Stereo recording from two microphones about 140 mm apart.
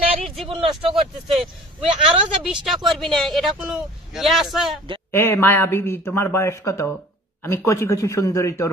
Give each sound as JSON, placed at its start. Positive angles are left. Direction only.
{"t": 0.5, "sound": "speech", "side_deg": -40}
{"t": 2.4, "sound": "speech", "side_deg": 0}
{"t": 5.1, "sound": "a man's voice", "side_deg": 15}